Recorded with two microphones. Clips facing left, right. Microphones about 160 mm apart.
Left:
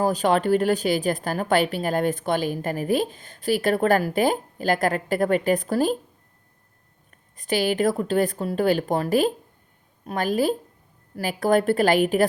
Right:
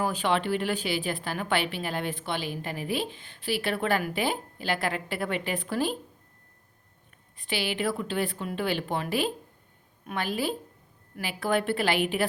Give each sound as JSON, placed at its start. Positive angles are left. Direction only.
{"t": 0.0, "sound": "a woman's voice", "side_deg": 40}
{"t": 7.3, "sound": "a woman's voice", "side_deg": 45}